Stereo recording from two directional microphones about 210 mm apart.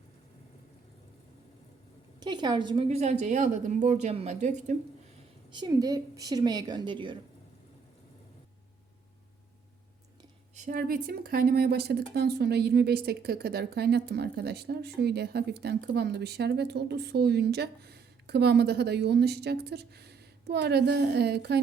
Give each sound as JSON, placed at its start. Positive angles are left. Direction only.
{"t": 2.2, "sound": "a woman's voice", "side_deg": -20}
{"t": 5.5, "sound": "a woman's voice", "side_deg": -20}
{"t": 10.5, "sound": "speech", "side_deg": -40}